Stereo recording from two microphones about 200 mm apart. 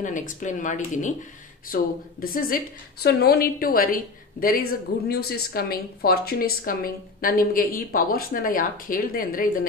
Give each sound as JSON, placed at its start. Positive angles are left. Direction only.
{"t": 0.0, "sound": "a woman's voice", "side_deg": 40}